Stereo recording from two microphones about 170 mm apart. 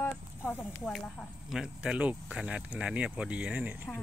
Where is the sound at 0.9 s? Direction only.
Centre (ahead or behind).